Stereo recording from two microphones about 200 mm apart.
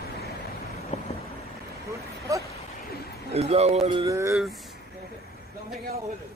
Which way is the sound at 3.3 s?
30° right (ahead or behind).